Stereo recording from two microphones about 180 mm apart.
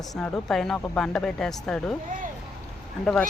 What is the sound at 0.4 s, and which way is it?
Speech, 5° left (ahead or behind).